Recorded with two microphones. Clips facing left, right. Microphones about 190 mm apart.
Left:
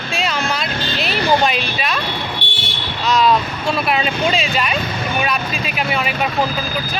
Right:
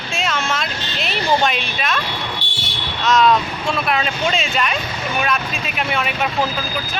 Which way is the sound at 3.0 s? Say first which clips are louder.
Even; centre (ahead or behind).